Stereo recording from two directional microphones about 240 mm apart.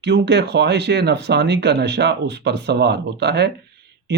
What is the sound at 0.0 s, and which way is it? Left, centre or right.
Speech, right.